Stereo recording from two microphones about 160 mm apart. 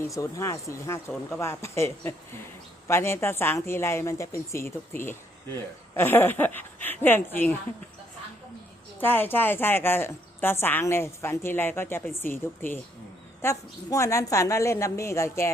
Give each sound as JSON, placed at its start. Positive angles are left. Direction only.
{"t": 0.2, "sound": "a woman's voice", "side_deg": 20}
{"t": 9.0, "sound": "a woman's voice", "side_deg": 10}